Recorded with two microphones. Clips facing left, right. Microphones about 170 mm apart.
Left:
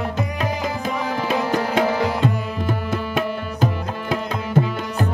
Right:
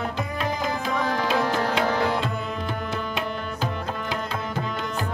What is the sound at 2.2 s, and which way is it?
Tabla, 50° left (ahead or behind).